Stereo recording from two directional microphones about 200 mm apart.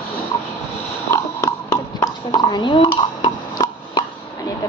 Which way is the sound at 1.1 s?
15° left (ahead or behind).